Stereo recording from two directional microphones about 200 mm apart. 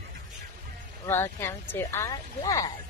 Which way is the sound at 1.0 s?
10° left (ahead or behind).